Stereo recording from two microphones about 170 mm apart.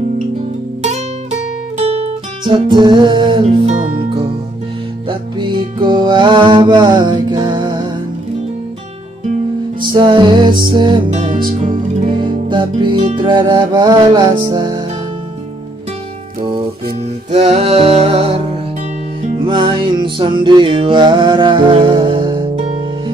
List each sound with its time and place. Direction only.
0.8 s music: 40° right (ahead or behind)
2.4 s music: 25° right (ahead or behind)
5.0 s music: 30° right (ahead or behind)
9.8 s music: 25° right (ahead or behind)
17.3 s music: 40° right (ahead or behind)
19.4 s music: 30° right (ahead or behind)